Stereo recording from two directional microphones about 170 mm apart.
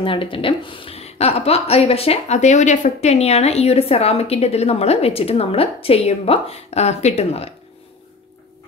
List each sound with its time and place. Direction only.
0.0 s a woman's voice: 30° left (ahead or behind)